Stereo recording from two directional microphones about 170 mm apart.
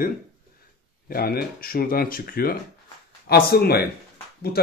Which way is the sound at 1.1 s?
65° left (ahead or behind).